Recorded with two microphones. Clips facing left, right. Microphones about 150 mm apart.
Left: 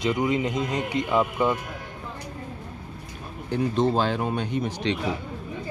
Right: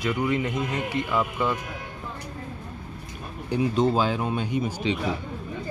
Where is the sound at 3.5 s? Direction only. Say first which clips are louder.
Even; 5° right (ahead or behind).